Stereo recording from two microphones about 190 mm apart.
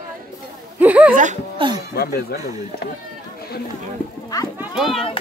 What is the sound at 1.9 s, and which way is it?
Speech, 55° left (ahead or behind).